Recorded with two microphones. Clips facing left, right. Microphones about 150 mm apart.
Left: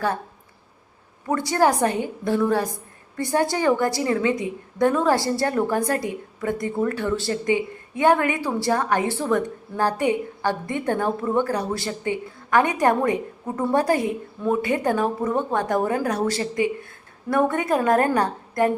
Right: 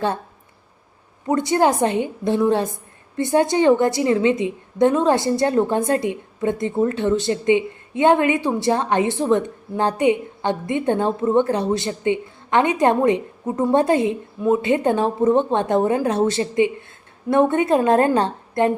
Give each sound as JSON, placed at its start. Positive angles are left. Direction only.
{"t": 1.3, "sound": "a woman's voice", "side_deg": -20}